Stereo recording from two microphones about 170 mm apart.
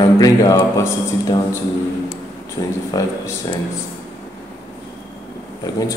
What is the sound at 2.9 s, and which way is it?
Speech, 20° left (ahead or behind).